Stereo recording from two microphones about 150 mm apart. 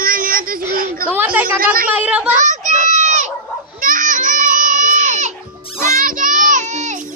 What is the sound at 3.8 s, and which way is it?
Goat, 65° right (ahead or behind).